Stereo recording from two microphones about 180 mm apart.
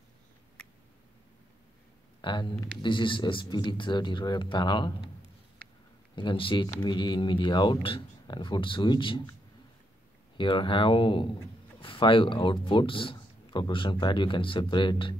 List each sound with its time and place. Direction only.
2.2 s speech: 25° left (ahead or behind)
6.1 s speech: 30° left (ahead or behind)
10.3 s speech: 25° left (ahead or behind)